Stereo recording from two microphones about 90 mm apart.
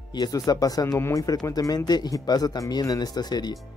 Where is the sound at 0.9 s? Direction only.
30° left (ahead or behind).